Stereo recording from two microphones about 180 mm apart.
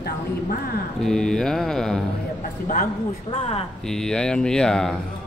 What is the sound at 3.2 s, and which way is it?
Speech, 35° left (ahead or behind).